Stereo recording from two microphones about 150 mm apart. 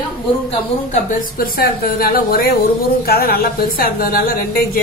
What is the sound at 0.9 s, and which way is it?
A woman's voice, 70° left (ahead or behind).